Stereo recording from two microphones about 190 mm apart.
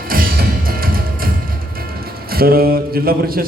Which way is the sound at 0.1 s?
50° right (ahead or behind).